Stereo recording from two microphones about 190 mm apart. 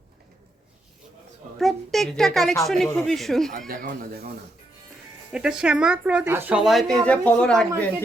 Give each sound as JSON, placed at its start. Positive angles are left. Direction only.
{"t": 1.5, "sound": "speech", "side_deg": 0}
{"t": 3.7, "sound": "speech", "side_deg": -50}
{"t": 5.3, "sound": "speech", "side_deg": -5}